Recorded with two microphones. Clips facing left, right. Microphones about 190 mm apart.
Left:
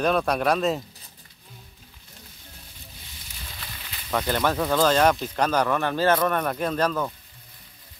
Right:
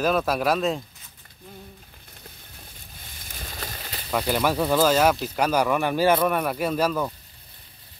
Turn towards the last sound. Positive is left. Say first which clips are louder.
# right 1 dB
turn(degrees=-10)  # may be behind; listen again after turning